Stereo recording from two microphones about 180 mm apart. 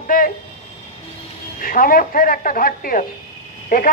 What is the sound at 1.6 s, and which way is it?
A man's voice, 50° left (ahead or behind).